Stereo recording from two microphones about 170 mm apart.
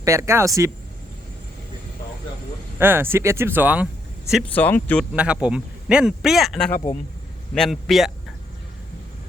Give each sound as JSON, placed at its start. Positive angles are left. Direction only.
{"t": 0.0, "sound": "speech", "side_deg": -15}
{"t": 2.7, "sound": "speech", "side_deg": -15}
{"t": 4.5, "sound": "speech", "side_deg": 10}
{"t": 5.1, "sound": "a man's voice", "side_deg": -5}
{"t": 6.7, "sound": "speech", "side_deg": 55}
{"t": 7.5, "sound": "a man's voice", "side_deg": 0}